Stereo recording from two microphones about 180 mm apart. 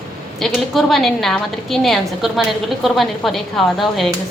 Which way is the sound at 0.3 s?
Centre (ahead or behind).